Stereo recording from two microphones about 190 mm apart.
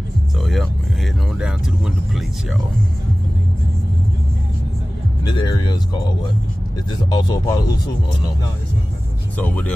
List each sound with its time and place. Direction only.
0.4 s vehicle: centre (ahead or behind)
1.4 s speech: centre (ahead or behind)
5.3 s speech: 25° left (ahead or behind)
7.1 s speech: 20° left (ahead or behind)
9.4 s speech: 5° left (ahead or behind)